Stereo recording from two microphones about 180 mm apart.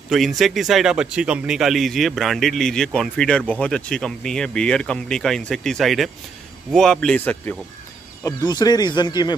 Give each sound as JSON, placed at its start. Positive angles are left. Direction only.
{"t": 0.1, "sound": "speech", "side_deg": 0}
{"t": 8.2, "sound": "speech", "side_deg": 20}